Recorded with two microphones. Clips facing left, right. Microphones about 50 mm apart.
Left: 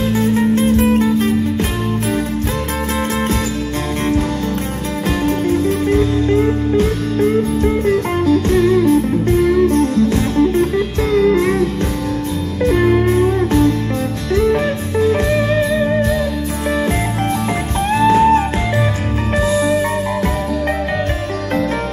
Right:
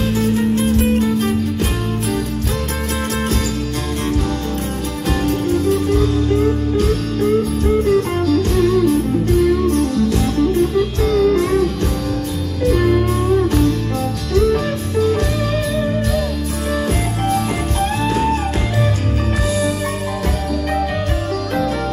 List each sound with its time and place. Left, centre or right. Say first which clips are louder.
0.1 s music: left 3 dB; left
5.2 s music: left 1 dB; left
17.9 s music: left 10 dB; left